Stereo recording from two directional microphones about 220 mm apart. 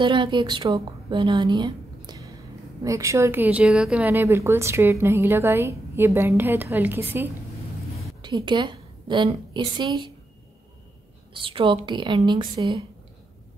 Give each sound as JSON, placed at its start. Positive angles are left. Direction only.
{"t": 0.0, "sound": "a woman's voice", "side_deg": -20}
{"t": 8.2, "sound": "a woman's voice", "side_deg": -20}
{"t": 11.3, "sound": "a woman's voice", "side_deg": -25}